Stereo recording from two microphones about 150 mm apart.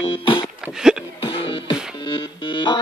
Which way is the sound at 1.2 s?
30° left (ahead or behind).